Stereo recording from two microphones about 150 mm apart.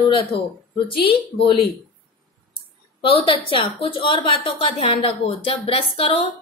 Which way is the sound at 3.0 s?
35° left (ahead or behind).